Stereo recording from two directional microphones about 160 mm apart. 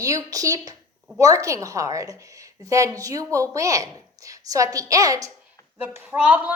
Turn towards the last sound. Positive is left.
turn(degrees=-10)  # may be behind; listen again after turning